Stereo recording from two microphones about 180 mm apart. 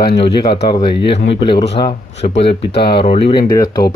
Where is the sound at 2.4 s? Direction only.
30° left (ahead or behind).